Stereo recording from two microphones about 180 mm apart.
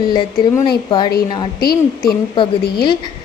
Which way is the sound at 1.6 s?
55° left (ahead or behind).